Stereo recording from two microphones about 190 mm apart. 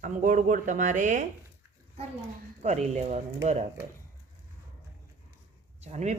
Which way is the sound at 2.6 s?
35° right (ahead or behind).